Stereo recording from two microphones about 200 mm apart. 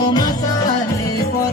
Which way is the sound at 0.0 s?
20° left (ahead or behind).